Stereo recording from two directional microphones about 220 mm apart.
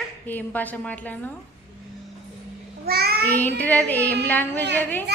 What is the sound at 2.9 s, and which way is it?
Child singing, 45° right (ahead or behind).